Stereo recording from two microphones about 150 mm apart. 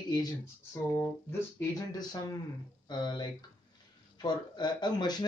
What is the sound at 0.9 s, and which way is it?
Speech, 15° left (ahead or behind).